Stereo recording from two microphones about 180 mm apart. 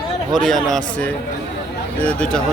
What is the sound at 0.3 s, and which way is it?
Speech, centre (ahead or behind).